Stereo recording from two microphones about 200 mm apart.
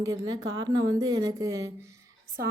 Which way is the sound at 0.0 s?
15° right (ahead or behind).